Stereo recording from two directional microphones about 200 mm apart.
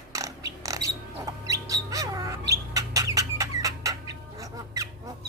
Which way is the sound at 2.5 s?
15° right (ahead or behind).